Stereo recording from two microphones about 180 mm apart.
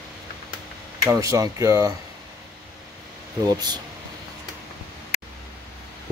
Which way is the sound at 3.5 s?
20° right (ahead or behind).